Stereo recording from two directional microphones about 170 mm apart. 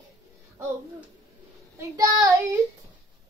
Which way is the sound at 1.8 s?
20° right (ahead or behind).